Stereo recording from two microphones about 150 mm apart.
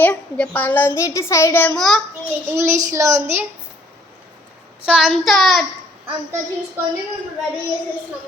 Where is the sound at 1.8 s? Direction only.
Centre (ahead or behind).